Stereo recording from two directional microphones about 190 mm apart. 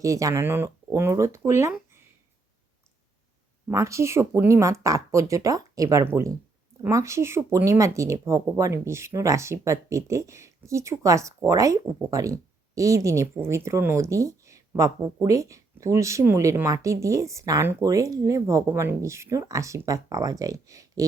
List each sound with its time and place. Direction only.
0.0 s speech: 15° right (ahead or behind)
3.7 s speech: 15° right (ahead or behind)